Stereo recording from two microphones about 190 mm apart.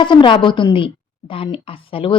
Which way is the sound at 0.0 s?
25° left (ahead or behind).